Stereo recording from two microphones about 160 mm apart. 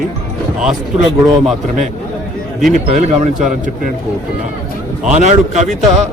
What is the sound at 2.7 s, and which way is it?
Speech, 45° right (ahead or behind).